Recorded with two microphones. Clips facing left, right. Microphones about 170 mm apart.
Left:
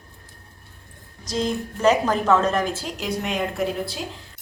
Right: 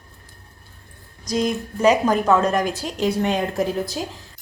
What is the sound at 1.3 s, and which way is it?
A woman's voice, 15° right (ahead or behind).